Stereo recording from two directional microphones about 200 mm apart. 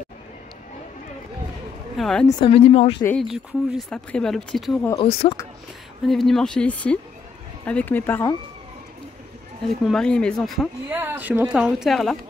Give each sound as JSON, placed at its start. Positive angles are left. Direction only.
{"t": 2.0, "sound": "speech", "side_deg": 0}
{"t": 2.2, "sound": "speech", "side_deg": 30}
{"t": 3.0, "sound": "speech", "side_deg": 10}
{"t": 5.0, "sound": "speech", "side_deg": 30}
{"t": 6.0, "sound": "speech", "side_deg": 0}
{"t": 9.8, "sound": "speech", "side_deg": 5}
{"t": 10.9, "sound": "speech", "side_deg": -10}